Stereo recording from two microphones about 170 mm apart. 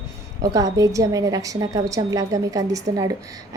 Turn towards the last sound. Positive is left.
turn(degrees=-20)  # may be behind; listen again after turning